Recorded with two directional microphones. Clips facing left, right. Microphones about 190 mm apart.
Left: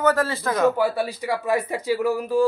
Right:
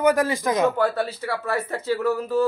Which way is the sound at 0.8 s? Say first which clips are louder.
Even; 15° left (ahead or behind).